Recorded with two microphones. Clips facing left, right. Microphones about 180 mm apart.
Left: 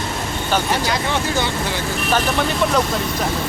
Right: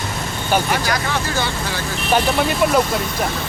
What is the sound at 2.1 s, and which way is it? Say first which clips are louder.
Speech: right 3 dB; 10° right (ahead or behind).